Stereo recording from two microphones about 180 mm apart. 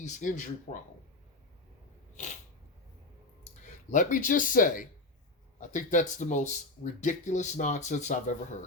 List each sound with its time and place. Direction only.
0.0 s speech: 45° left (ahead or behind)
3.9 s speech: 45° left (ahead or behind)